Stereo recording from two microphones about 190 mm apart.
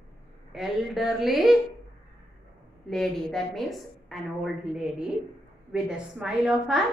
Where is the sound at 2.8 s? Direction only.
Centre (ahead or behind).